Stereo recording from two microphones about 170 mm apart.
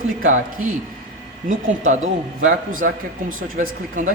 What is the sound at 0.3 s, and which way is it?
A man's voice, 50° right (ahead or behind).